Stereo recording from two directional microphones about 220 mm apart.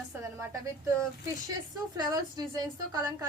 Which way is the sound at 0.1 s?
10° right (ahead or behind).